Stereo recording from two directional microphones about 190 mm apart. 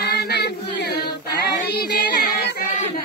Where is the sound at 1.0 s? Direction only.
60° left (ahead or behind).